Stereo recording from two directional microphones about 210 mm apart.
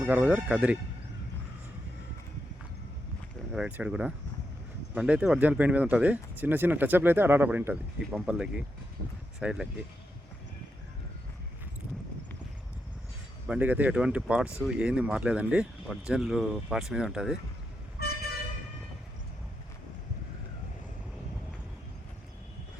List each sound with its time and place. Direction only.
0.0 s speech: 5° right (ahead or behind)
3.5 s speech: 5° right (ahead or behind)
13.5 s speech: 10° right (ahead or behind)
18.0 s vehicle: 50° left (ahead or behind)